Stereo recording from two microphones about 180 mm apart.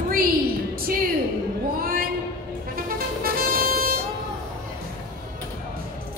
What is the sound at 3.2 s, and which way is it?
Music, 55° right (ahead or behind).